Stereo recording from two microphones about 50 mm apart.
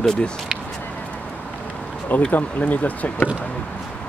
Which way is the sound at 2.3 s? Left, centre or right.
Left.